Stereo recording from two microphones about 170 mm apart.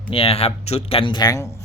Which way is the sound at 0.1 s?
35° left (ahead or behind).